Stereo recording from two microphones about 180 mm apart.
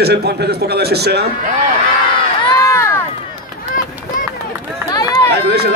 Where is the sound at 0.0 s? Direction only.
65° right (ahead or behind).